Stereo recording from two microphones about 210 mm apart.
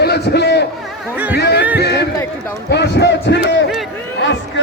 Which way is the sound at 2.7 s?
55° left (ahead or behind).